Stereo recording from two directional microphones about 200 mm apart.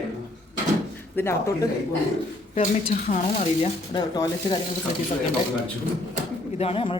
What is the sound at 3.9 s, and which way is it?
Speech, 20° left (ahead or behind).